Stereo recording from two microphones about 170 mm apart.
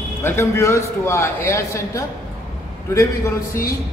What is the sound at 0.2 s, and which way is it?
A man's voice, 15° left (ahead or behind).